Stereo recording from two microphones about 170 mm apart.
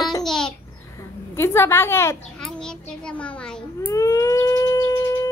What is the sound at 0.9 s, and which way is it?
A woman's voice, 15° left (ahead or behind).